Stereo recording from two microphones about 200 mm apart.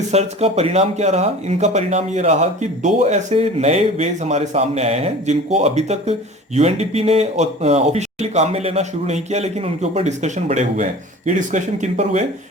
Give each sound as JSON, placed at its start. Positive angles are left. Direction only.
{"t": 0.1, "sound": "speech", "side_deg": -30}